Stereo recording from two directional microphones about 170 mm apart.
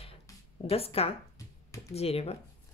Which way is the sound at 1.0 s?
35° left (ahead or behind).